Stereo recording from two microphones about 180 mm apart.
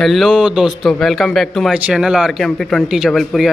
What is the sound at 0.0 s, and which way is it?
A man's voice, centre (ahead or behind).